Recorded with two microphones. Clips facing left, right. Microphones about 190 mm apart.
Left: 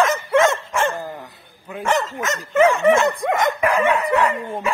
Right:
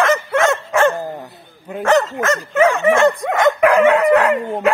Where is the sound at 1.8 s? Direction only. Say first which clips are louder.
Right 6 dB; 70° right (ahead or behind).